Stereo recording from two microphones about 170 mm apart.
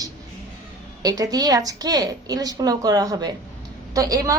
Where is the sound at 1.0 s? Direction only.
20° right (ahead or behind).